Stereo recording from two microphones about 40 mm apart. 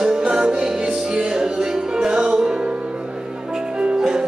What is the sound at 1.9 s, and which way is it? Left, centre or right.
Music, right.